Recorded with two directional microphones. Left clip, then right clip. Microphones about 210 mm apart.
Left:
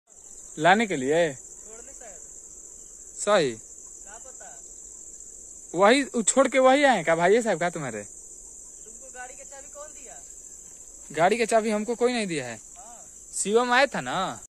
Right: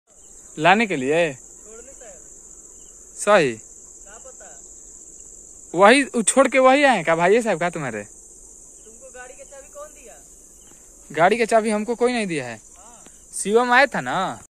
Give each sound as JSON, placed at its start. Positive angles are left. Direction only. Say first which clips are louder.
{"t": 0.6, "sound": "speech", "louder": "right 4 dB", "side_deg": 10}
{"t": 3.2, "sound": "speech", "louder": "right 6 dB", "side_deg": 0}
{"t": 5.7, "sound": "speech", "louder": "right 6 dB", "side_deg": 0}
{"t": 9.1, "sound": "a sound", "louder": "right 1 dB", "side_deg": 60}
{"t": 11.1, "sound": "speech", "louder": "right 5 dB", "side_deg": 5}